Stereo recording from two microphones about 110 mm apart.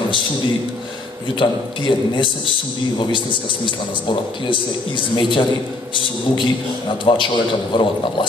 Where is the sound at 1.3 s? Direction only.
45° left (ahead or behind).